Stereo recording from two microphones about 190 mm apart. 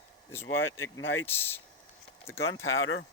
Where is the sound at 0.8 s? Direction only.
15° left (ahead or behind).